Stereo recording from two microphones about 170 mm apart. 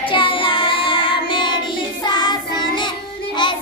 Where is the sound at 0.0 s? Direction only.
30° left (ahead or behind).